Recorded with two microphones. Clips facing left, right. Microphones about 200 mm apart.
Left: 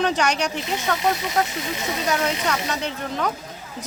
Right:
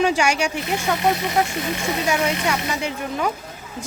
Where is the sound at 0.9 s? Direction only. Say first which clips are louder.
Right 2 dB; 60° right (ahead or behind).